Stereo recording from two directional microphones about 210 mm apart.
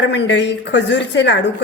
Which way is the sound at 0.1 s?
55° left (ahead or behind).